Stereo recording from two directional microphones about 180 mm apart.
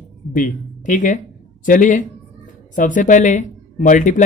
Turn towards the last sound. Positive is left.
turn(degrees=45)  # may be behind; listen again after turning